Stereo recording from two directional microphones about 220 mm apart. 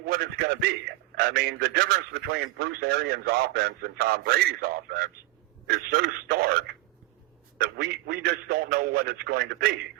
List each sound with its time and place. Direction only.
0.1 s a sound: 45° right (ahead or behind)
1.1 s a man's voice: 45° right (ahead or behind)
7.8 s a man's voice: 45° right (ahead or behind)